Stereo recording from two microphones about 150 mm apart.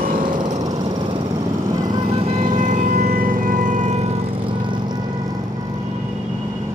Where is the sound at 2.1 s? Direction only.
40° right (ahead or behind).